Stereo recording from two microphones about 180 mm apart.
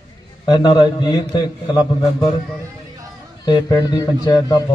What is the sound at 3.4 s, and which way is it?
A man's voice, 20° left (ahead or behind).